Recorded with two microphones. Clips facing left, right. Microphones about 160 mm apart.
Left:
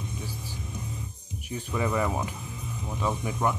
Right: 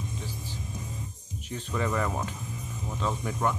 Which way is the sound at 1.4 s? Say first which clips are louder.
Left 1 dB; 10° left (ahead or behind).